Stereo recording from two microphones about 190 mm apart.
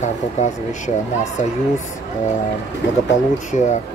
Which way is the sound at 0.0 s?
40° left (ahead or behind).